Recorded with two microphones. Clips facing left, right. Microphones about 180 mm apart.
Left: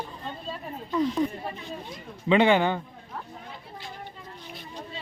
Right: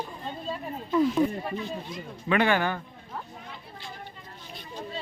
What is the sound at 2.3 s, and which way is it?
Speech, 20° left (ahead or behind).